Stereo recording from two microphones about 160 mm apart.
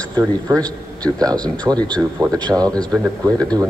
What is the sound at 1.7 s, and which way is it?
Speech, 10° right (ahead or behind).